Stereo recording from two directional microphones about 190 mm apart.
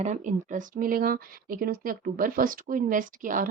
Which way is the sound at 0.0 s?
40° right (ahead or behind).